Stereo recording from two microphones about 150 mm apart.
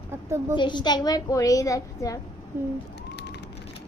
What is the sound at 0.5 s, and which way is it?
A woman's voice, 30° left (ahead or behind).